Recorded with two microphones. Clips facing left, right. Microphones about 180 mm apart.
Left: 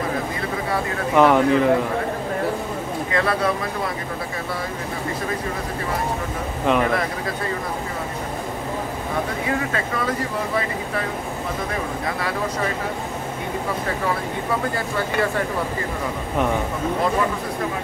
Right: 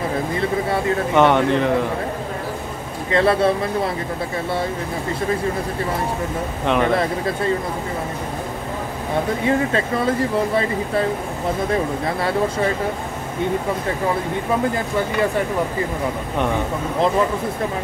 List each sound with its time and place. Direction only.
1.1 s speech: centre (ahead or behind)
3.1 s speech: 30° right (ahead or behind)
6.6 s speech: centre (ahead or behind)
9.7 s speech: 25° right (ahead or behind)